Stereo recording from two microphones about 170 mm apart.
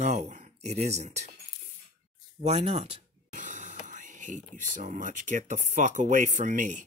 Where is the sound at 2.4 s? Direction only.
40° right (ahead or behind).